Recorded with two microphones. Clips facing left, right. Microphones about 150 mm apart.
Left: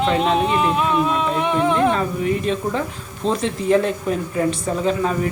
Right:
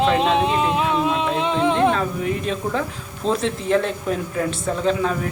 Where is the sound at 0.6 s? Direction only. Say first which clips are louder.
Left 1 dB; 25° right (ahead or behind).